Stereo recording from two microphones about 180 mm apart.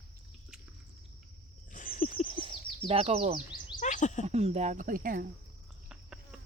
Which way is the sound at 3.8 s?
45° left (ahead or behind).